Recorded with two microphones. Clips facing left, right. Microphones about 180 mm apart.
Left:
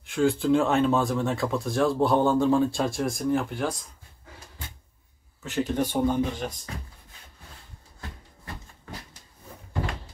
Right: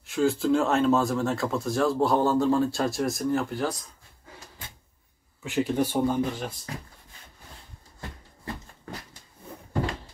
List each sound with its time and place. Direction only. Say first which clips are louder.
0.1 s speech: left 1 dB; centre (ahead or behind)
5.4 s speech: right 1 dB; 10° right (ahead or behind)